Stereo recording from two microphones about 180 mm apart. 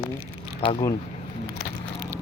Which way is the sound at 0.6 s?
30° left (ahead or behind).